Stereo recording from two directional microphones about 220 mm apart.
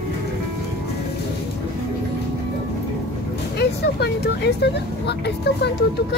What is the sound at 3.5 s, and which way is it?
Speech, 50° left (ahead or behind).